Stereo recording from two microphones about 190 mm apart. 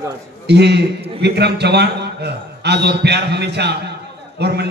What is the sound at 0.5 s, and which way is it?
A man's voice, 60° right (ahead or behind).